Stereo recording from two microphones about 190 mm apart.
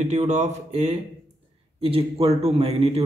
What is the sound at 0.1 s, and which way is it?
A man's voice, 35° right (ahead or behind).